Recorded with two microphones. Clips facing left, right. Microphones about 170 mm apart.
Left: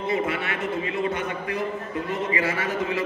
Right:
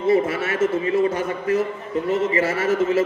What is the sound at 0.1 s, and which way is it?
A man's voice, 40° right (ahead or behind).